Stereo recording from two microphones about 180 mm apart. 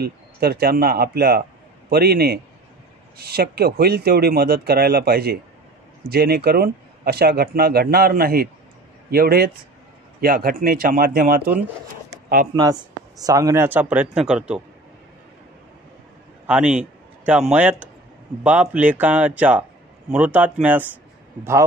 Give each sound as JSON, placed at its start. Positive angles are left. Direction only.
{"t": 0.0, "sound": "a man's voice", "side_deg": -60}
{"t": 12.5, "sound": "speech", "side_deg": -20}
{"t": 16.4, "sound": "a man's voice", "side_deg": -5}